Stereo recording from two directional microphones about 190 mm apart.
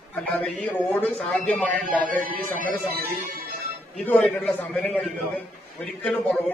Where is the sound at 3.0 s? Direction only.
50° right (ahead or behind).